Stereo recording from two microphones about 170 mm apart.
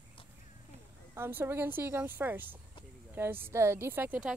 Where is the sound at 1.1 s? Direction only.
15° right (ahead or behind).